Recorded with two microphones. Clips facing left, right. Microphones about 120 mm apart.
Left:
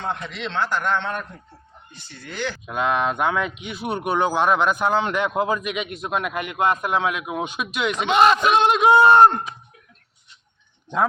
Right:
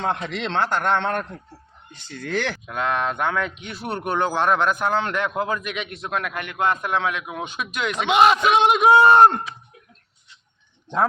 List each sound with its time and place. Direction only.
0.2 s a man's voice: 55° right (ahead or behind)
2.0 s speech: 90° right
2.6 s speech: 10° left (ahead or behind)
7.9 s a man's voice: 10° right (ahead or behind)